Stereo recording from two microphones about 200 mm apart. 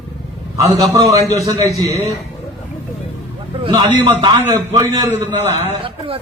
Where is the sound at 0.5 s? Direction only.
15° right (ahead or behind).